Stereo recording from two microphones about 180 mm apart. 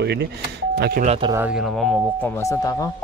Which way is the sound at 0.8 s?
55° right (ahead or behind).